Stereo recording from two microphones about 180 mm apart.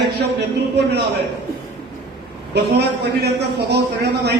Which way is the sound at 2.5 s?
65° right (ahead or behind).